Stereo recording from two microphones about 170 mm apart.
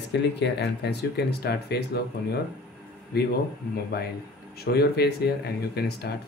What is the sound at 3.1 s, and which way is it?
Speech, 70° left (ahead or behind).